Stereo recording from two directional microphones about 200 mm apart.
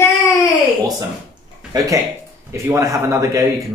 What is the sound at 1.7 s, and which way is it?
Speech, 20° right (ahead or behind).